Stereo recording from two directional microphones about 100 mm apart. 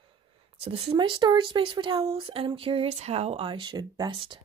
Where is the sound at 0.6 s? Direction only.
75° right (ahead or behind).